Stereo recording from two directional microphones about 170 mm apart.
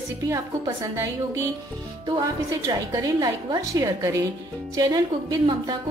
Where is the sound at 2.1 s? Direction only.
25° right (ahead or behind).